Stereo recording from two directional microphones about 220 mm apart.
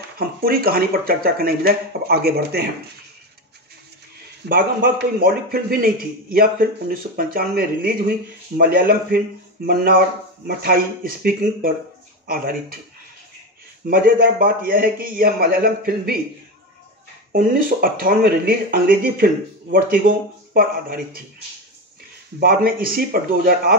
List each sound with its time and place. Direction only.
0.2 s speech: 40° right (ahead or behind)
4.5 s a man's voice: 40° right (ahead or behind)
13.8 s a man's voice: 40° right (ahead or behind)
17.3 s a man's voice: 40° right (ahead or behind)
20.5 s a man's voice: 40° right (ahead or behind)
22.4 s a man's voice: 40° right (ahead or behind)